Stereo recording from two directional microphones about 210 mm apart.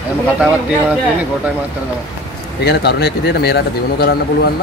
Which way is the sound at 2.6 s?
50° left (ahead or behind).